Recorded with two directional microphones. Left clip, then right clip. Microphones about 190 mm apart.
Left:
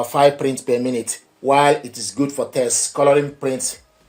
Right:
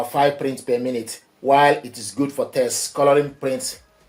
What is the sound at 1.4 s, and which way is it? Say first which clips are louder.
Speech: even; 30° left (ahead or behind).